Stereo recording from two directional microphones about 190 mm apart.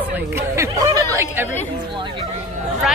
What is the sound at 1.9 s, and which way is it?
Speech, 25° right (ahead or behind).